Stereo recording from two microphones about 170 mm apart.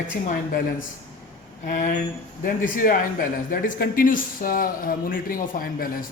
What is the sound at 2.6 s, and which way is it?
Speech, 55° left (ahead or behind).